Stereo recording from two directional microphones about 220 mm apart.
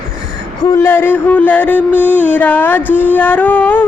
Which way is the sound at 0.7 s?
10° left (ahead or behind).